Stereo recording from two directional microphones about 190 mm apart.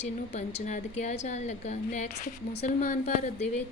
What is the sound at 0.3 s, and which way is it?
A woman's voice, 40° left (ahead or behind).